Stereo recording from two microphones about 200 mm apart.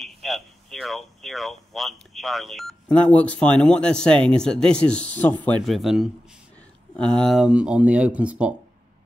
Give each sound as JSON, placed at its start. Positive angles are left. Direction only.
{"t": 0.0, "sound": "speech", "side_deg": 0}